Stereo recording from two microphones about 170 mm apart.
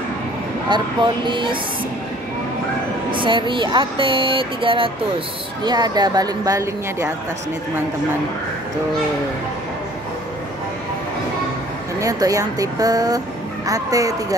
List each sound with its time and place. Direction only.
0.7 s speech: 25° right (ahead or behind)
3.2 s speech: 30° right (ahead or behind)
12.0 s speech: 20° right (ahead or behind)